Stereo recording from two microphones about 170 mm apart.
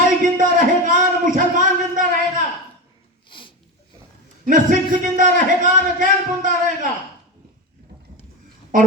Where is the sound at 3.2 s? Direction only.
30° left (ahead or behind).